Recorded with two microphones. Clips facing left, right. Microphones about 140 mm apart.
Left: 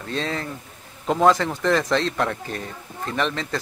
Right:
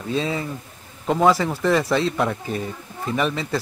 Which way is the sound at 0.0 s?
5° right (ahead or behind).